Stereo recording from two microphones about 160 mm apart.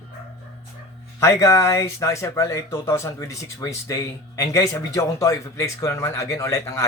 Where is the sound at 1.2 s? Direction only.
20° left (ahead or behind).